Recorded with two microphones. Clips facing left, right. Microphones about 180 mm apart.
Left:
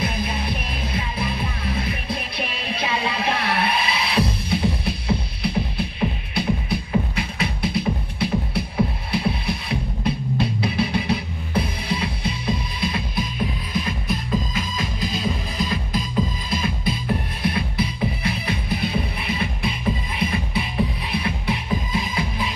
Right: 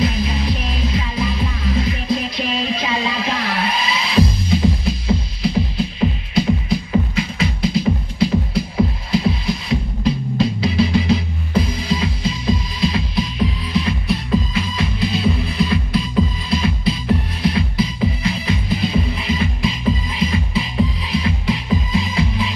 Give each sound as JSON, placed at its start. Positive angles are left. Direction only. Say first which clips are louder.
{"t": 0.0, "sound": "music", "louder": "right 6 dB", "side_deg": 55}